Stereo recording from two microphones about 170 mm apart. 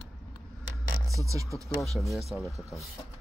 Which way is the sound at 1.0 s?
20° right (ahead or behind).